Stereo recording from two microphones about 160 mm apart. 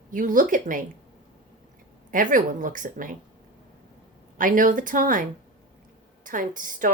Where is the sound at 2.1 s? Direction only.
55° right (ahead or behind).